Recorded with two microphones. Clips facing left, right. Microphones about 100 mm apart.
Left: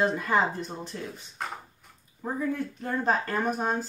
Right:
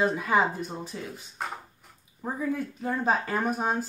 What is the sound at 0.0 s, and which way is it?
Speech, 5° right (ahead or behind).